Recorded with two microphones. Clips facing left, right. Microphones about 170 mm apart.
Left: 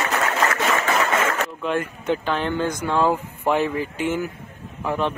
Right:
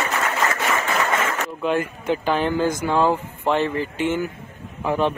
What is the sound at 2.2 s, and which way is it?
Speech, 5° right (ahead or behind).